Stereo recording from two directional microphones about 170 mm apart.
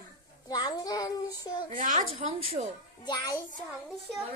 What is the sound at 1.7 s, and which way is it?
Speech, 50° right (ahead or behind).